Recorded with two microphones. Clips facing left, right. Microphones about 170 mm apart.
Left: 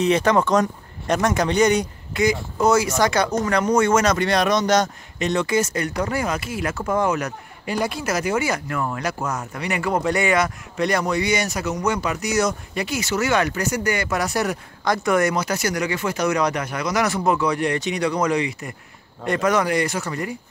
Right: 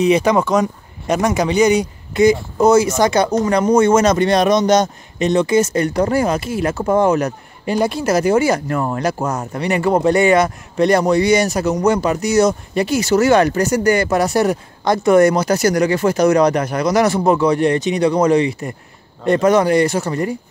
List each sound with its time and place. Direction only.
0.0 s speech: 10° right (ahead or behind)
2.1 s speech: 25° right (ahead or behind)